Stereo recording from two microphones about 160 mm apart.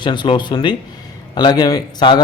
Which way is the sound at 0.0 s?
30° left (ahead or behind).